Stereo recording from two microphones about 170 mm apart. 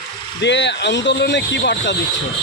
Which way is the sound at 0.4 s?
90° left.